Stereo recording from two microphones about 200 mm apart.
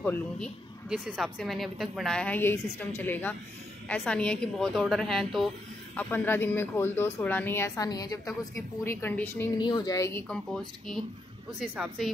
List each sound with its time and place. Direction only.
0.0 s speech: 10° left (ahead or behind)
0.8 s a woman's voice: 5° right (ahead or behind)
9.6 s speech: 20° left (ahead or behind)
10.2 s a woman's voice: 5° left (ahead or behind)